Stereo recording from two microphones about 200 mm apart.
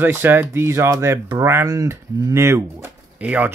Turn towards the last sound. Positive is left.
turn(degrees=-10)  # may be behind; listen again after turning